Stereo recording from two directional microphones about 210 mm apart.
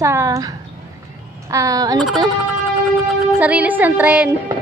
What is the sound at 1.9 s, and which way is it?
A woman's voice, centre (ahead or behind).